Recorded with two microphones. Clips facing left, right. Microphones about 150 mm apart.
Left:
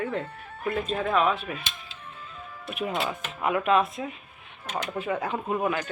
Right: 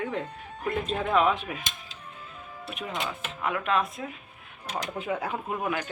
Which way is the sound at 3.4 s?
10° left (ahead or behind).